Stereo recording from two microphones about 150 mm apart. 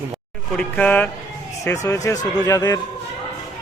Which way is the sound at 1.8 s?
20° left (ahead or behind).